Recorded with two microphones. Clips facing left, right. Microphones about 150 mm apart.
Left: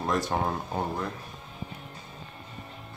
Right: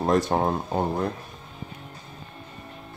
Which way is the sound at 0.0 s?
30° right (ahead or behind).